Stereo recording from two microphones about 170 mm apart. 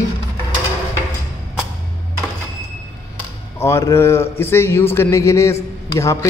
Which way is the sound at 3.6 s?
15° left (ahead or behind).